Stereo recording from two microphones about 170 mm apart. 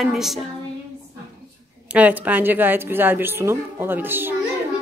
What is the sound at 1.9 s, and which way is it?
A woman's voice, 10° right (ahead or behind).